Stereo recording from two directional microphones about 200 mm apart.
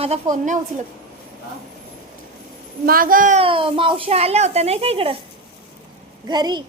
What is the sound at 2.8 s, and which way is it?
A woman's voice, 45° right (ahead or behind).